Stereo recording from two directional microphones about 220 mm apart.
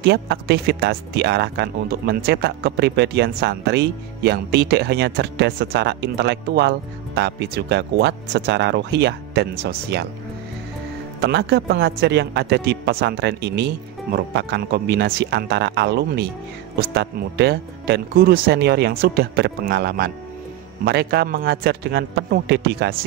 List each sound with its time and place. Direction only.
0.0 s speech: 50° right (ahead or behind)
11.1 s speech: 50° right (ahead or behind)